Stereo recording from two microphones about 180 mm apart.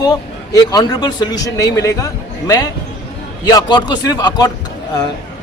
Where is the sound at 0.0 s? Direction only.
20° left (ahead or behind).